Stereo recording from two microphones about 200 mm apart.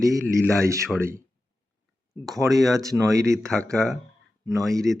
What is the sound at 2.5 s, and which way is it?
Speech, 15° right (ahead or behind).